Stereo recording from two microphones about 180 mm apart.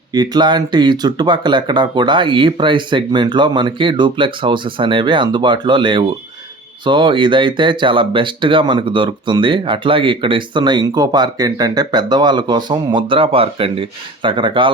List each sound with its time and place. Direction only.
0.1 s speech: 25° right (ahead or behind)